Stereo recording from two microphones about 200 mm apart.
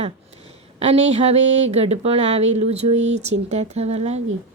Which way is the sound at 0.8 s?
30° right (ahead or behind).